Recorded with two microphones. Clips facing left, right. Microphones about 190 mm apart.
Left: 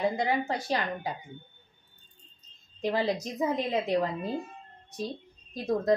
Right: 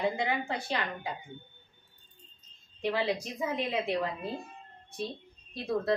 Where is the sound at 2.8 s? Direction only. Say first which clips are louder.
Left 2 dB; 40° left (ahead or behind).